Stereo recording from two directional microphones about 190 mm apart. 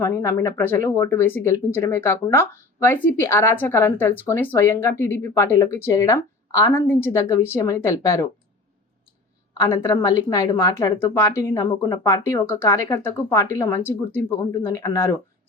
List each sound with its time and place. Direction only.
0.0 s speech: 15° left (ahead or behind)
9.6 s speech: 15° left (ahead or behind)